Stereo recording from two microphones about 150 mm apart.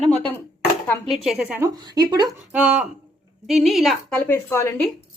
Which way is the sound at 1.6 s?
25° right (ahead or behind).